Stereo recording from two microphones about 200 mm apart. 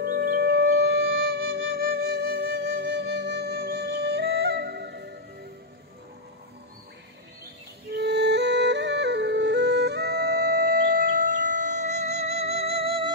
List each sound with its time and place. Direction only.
0.0 s music: 45° right (ahead or behind)
1.7 s flute: 50° right (ahead or behind)
7.9 s music: 55° right (ahead or behind); by 13.1 s 25° right (ahead or behind)